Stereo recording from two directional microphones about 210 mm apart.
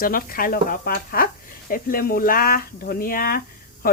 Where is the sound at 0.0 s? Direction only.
45° left (ahead or behind).